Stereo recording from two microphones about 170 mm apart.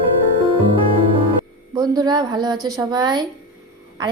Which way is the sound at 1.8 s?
25° right (ahead or behind).